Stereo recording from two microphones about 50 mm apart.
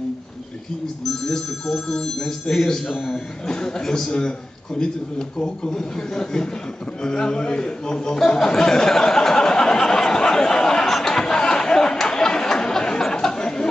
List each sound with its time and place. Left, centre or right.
1.0 s speech: centre
5.4 s speech: centre
8.4 s a sound: centre